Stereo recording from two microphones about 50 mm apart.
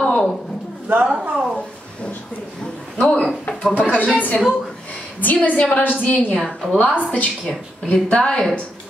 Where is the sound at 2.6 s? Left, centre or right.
Centre.